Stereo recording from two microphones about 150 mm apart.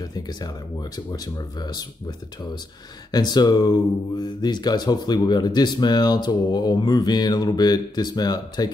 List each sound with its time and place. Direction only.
0.1 s speech: 25° left (ahead or behind)
3.1 s speech: 25° left (ahead or behind)